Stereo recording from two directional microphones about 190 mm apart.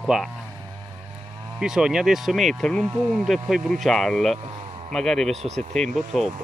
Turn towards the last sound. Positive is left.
turn(degrees=0)  # may be behind; listen again after turning